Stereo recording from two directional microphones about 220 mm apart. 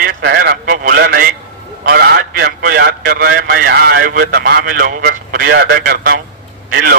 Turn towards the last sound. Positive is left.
turn(degrees=-40)  # may be behind; listen again after turning